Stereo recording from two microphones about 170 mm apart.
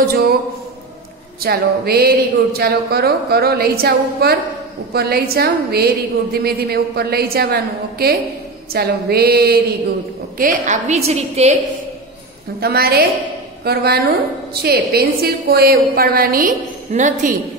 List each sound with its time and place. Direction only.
0.1 s a sound: 65° right (ahead or behind)
1.4 s a woman's voice: 65° right (ahead or behind)
10.3 s a woman's voice: 50° right (ahead or behind)
12.5 s a woman's voice: 65° right (ahead or behind); by 17.3 s 50° right (ahead or behind)